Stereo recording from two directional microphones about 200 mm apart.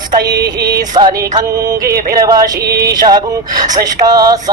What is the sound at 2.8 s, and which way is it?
Speech, 20° right (ahead or behind).